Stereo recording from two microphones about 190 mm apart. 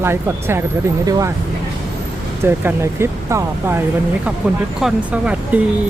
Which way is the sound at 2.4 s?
10° right (ahead or behind).